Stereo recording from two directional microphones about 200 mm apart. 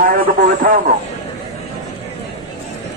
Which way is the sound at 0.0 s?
45° right (ahead or behind).